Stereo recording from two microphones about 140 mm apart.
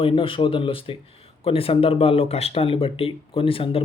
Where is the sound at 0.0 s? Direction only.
40° left (ahead or behind).